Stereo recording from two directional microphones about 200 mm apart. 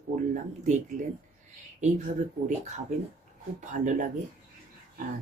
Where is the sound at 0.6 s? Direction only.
35° right (ahead or behind).